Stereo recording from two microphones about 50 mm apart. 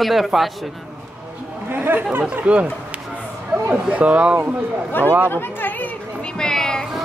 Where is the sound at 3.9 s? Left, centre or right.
Right.